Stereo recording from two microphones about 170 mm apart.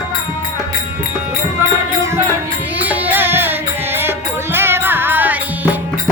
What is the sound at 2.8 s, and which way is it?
Music, 10° right (ahead or behind).